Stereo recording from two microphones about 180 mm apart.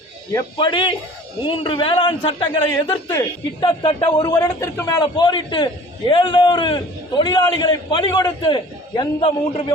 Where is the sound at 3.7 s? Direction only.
25° left (ahead or behind).